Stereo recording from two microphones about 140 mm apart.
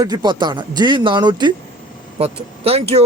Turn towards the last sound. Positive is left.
turn(degrees=-45)  # may be behind; listen again after turning